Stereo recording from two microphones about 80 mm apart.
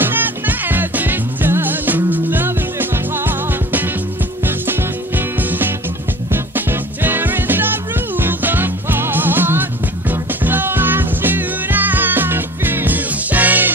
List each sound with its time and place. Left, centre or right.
0.0 s music: right